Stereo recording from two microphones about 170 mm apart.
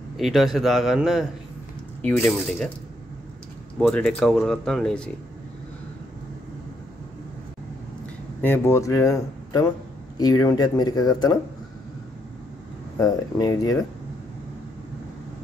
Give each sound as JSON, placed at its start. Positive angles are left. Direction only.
{"t": 0.2, "sound": "speech", "side_deg": 0}
{"t": 2.0, "sound": "speech", "side_deg": 10}
{"t": 3.8, "sound": "speech", "side_deg": 5}
{"t": 8.4, "sound": "speech", "side_deg": 15}
{"t": 13.0, "sound": "speech", "side_deg": 20}